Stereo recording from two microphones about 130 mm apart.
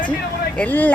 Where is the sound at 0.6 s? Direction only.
15° left (ahead or behind).